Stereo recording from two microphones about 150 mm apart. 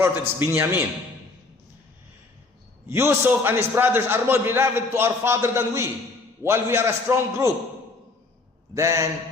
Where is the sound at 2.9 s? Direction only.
15° right (ahead or behind).